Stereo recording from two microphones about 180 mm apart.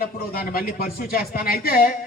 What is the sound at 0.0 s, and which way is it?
A man's voice, 55° left (ahead or behind).